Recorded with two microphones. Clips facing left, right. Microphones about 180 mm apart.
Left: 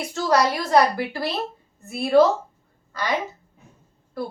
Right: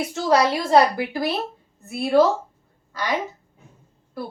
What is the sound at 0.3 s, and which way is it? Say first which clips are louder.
Speech: right 2 dB; 25° right (ahead or behind).